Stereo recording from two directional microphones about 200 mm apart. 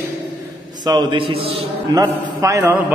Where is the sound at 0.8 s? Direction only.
20° right (ahead or behind).